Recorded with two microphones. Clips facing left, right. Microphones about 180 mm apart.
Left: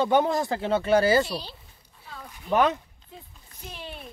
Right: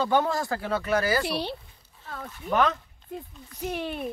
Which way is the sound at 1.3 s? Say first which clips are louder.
Right 5 dB; 65° right (ahead or behind).